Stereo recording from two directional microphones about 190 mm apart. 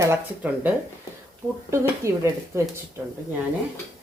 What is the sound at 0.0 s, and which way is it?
Speech, 10° right (ahead or behind).